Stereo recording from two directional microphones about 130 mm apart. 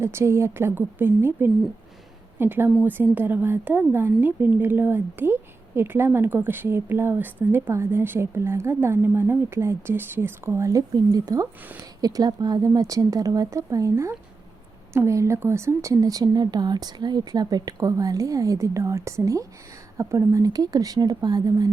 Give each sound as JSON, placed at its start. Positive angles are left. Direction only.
{"t": 0.0, "sound": "speech", "side_deg": -20}